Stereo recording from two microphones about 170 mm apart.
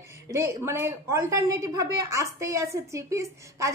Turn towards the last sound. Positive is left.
turn(degrees=-15)  # may be behind; listen again after turning